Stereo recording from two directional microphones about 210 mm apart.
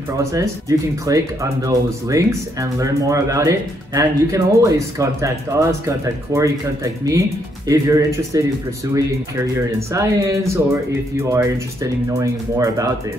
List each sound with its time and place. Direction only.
0.2 s speech: 15° right (ahead or behind)